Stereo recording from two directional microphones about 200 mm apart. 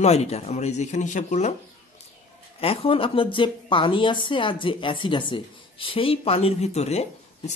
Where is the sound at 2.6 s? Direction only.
30° left (ahead or behind).